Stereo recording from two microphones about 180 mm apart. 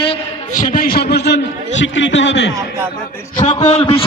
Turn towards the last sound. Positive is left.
turn(degrees=35)  # may be behind; listen again after turning